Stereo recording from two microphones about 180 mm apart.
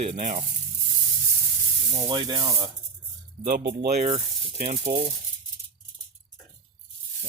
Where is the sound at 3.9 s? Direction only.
35° right (ahead or behind).